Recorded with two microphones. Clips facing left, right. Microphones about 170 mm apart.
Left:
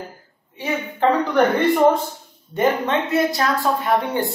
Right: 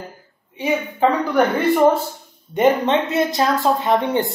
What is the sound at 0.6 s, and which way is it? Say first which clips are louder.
Speech: right 3 dB; 10° right (ahead or behind).